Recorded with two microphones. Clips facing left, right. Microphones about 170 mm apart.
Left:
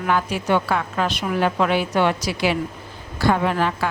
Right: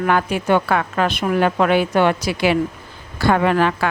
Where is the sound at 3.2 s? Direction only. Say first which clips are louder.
Right 3 dB; 70° right (ahead or behind).